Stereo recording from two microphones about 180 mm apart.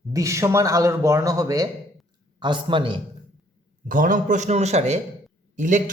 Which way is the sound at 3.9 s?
50° right (ahead or behind).